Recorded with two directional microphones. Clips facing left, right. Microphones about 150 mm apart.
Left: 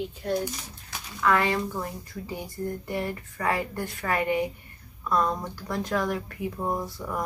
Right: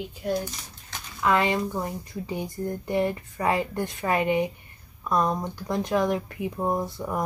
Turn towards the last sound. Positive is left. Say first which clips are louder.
# right 3 dB
turn(degrees=-20)  # may be behind; listen again after turning